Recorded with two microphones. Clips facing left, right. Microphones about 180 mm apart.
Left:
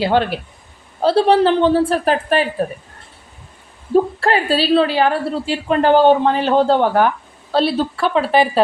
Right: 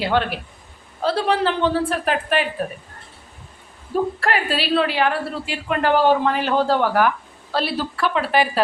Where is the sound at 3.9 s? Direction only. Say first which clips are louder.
Left 6 dB; 30° left (ahead or behind).